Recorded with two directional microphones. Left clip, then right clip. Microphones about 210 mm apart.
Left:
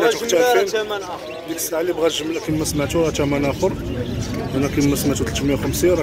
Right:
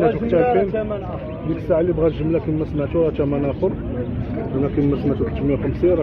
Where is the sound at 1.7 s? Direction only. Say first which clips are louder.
Right 2 dB; 10° left (ahead or behind).